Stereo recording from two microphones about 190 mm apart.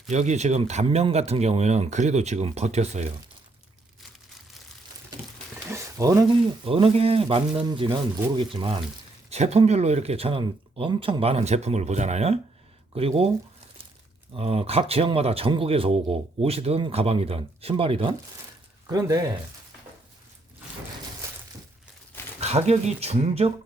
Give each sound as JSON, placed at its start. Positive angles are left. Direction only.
{"t": 0.1, "sound": "speech", "side_deg": -35}
{"t": 5.7, "sound": "a sound", "side_deg": -15}
{"t": 6.7, "sound": "speech", "side_deg": -30}
{"t": 14.3, "sound": "speech", "side_deg": -30}
{"t": 22.4, "sound": "speech", "side_deg": -35}